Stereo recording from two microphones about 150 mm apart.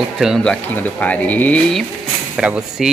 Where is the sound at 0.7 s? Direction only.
10° left (ahead or behind).